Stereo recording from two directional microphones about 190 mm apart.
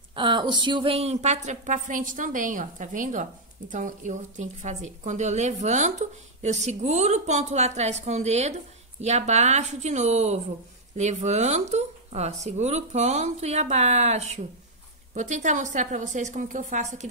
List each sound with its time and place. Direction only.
0.1 s a woman's voice: 25° right (ahead or behind)